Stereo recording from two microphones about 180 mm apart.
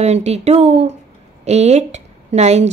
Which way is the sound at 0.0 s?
35° right (ahead or behind).